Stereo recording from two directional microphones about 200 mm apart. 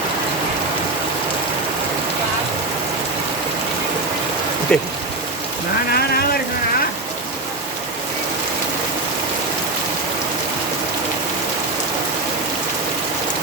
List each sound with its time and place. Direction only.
4.7 s speech: 5° left (ahead or behind)
5.9 s rain on surface: 50° left (ahead or behind)